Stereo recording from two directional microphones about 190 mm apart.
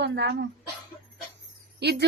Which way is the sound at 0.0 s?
65° right (ahead or behind).